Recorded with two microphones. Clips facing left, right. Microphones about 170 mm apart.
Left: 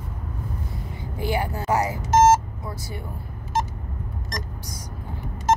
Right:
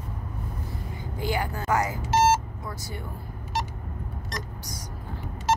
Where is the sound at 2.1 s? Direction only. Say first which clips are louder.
Left 5 dB; 45° left (ahead or behind).